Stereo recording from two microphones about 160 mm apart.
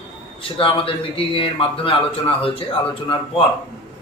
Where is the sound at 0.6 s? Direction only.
35° left (ahead or behind).